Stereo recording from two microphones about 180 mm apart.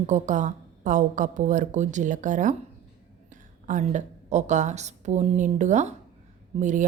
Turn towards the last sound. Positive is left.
turn(degrees=-45)  # may be behind; listen again after turning